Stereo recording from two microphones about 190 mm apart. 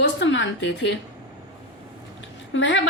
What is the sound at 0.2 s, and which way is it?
Speech, 75° left (ahead or behind).